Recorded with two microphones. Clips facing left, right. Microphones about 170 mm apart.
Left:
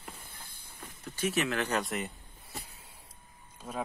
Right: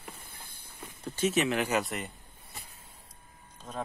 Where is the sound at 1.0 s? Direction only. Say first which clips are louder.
Right 3 dB; 25° right (ahead or behind).